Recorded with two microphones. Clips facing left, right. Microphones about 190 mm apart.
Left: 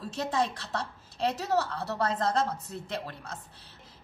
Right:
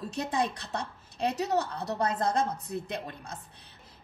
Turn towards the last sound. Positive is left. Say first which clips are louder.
# even
turn(degrees=-15)  # may be behind; listen again after turning